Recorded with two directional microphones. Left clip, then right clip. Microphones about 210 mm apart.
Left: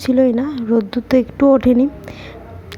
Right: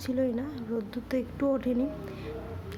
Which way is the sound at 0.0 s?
40° left (ahead or behind).